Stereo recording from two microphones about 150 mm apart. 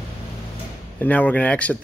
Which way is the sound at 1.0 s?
10° left (ahead or behind).